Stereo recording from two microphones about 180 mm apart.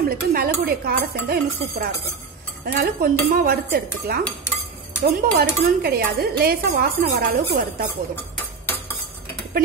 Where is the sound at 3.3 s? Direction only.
55° right (ahead or behind).